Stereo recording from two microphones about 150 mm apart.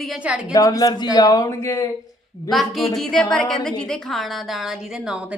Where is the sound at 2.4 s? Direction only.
Centre (ahead or behind).